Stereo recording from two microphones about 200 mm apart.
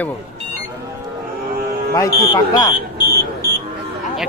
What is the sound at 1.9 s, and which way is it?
Speech, 20° left (ahead or behind).